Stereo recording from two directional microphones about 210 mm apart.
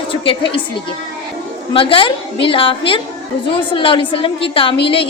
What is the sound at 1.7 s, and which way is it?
A woman's voice, 25° left (ahead or behind).